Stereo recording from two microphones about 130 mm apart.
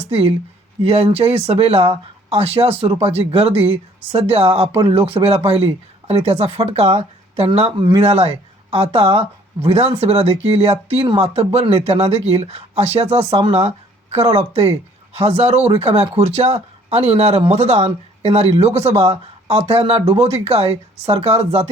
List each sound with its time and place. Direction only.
0.1 s speech: 50° right (ahead or behind)